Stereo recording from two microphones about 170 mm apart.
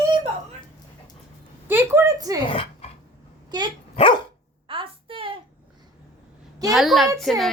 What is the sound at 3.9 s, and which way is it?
Dog, 30° left (ahead or behind).